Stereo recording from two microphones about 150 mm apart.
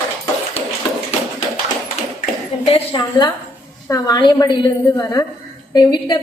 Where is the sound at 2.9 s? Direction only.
30° left (ahead or behind).